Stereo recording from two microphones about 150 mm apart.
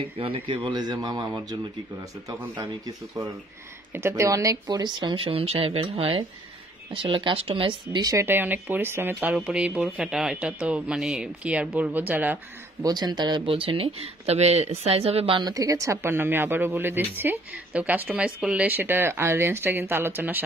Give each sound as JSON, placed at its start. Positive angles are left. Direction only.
{"t": 0.2, "sound": "speech", "side_deg": -35}
{"t": 3.2, "sound": "speech", "side_deg": -40}
{"t": 3.9, "sound": "speech", "side_deg": -20}
{"t": 12.8, "sound": "speech", "side_deg": -25}